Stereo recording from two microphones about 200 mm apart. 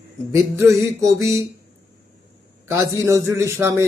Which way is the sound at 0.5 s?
15° right (ahead or behind).